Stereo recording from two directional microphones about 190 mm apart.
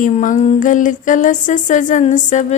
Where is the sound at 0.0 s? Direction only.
45° left (ahead or behind).